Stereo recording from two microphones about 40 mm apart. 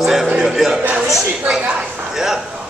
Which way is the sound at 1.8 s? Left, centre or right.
Centre.